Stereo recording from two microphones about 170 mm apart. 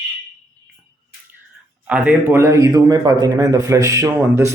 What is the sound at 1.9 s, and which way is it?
A man's voice, 10° right (ahead or behind).